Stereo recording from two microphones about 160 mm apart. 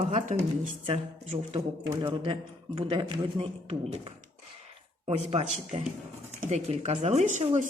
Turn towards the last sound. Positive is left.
turn(degrees=-45)  # may be behind; listen again after turning